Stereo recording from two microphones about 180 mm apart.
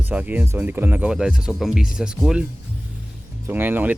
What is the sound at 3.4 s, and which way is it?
Speech, 10° right (ahead or behind).